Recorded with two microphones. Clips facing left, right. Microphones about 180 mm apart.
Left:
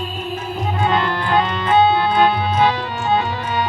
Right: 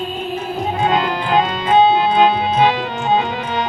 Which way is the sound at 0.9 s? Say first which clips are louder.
Right 1 dB; 20° right (ahead or behind).